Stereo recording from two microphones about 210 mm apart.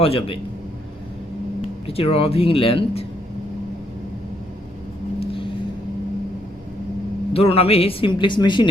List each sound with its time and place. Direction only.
0.0 s a man's voice: 25° left (ahead or behind)
1.9 s a man's voice: 25° left (ahead or behind)
7.3 s a man's voice: 30° left (ahead or behind)